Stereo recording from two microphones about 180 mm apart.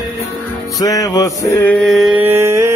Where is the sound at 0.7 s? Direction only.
20° left (ahead or behind).